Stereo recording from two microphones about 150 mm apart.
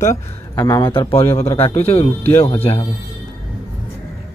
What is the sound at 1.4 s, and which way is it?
Speech, 40° left (ahead or behind).